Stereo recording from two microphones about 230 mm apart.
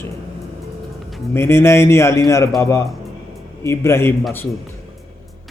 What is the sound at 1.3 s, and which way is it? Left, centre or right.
A man's voice, centre.